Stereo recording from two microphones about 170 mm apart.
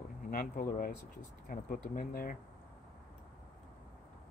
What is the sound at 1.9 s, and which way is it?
Speech, 60° left (ahead or behind).